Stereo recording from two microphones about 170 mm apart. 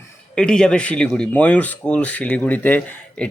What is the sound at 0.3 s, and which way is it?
Speech, 5° left (ahead or behind).